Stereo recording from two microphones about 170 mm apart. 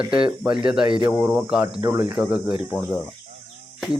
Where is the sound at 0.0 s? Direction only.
5° right (ahead or behind).